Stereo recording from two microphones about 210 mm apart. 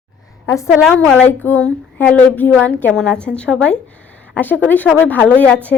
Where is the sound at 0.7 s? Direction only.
Centre (ahead or behind).